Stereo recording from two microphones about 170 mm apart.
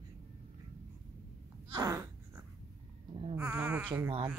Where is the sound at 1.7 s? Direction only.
20° right (ahead or behind).